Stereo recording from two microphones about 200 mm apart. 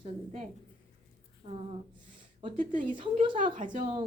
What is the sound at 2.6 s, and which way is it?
Speech, 40° right (ahead or behind).